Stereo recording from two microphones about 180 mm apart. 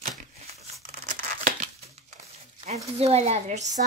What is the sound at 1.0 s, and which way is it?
Tearing, 40° right (ahead or behind).